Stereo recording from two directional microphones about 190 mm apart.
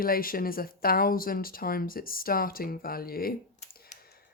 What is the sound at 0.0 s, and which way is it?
Speech, 50° left (ahead or behind).